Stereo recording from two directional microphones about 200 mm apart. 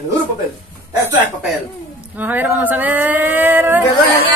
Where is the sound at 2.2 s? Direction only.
10° right (ahead or behind).